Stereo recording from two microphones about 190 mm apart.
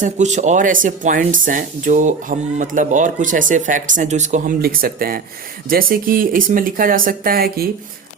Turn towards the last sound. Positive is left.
turn(degrees=-50)  # may be behind; listen again after turning